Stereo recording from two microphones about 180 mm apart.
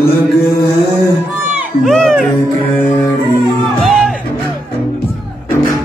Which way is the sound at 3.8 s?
Centre (ahead or behind).